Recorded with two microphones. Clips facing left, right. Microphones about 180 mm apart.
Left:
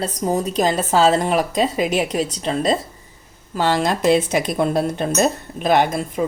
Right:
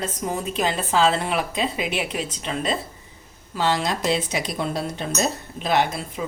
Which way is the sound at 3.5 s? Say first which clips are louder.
Left 4 dB; 50° left (ahead or behind).